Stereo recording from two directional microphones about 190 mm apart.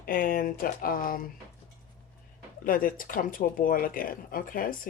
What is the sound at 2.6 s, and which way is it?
Speech, 45° left (ahead or behind).